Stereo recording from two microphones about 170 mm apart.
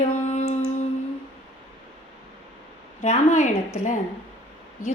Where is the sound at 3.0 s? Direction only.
45° left (ahead or behind).